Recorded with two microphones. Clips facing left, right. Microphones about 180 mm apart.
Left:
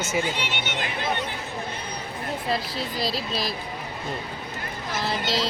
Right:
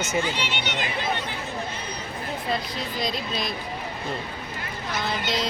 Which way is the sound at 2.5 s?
5° left (ahead or behind).